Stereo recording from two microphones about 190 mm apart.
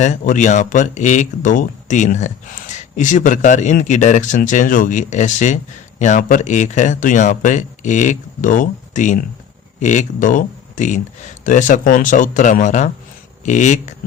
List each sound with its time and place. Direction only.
0.0 s speech: 40° left (ahead or behind)